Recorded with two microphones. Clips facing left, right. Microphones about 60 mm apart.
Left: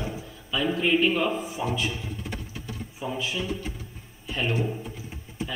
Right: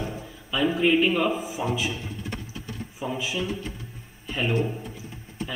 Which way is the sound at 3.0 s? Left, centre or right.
Centre.